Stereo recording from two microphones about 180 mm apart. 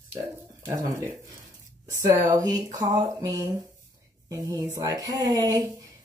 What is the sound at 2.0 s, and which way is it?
Speech, 20° right (ahead or behind).